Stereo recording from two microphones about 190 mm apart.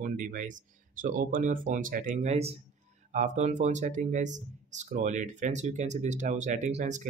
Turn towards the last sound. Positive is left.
turn(degrees=-40)  # may be behind; listen again after turning